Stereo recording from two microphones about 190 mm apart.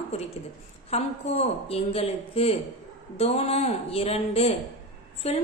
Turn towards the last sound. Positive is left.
turn(degrees=35)  # may be behind; listen again after turning